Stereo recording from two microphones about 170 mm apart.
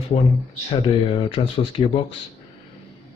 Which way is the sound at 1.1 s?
30° left (ahead or behind).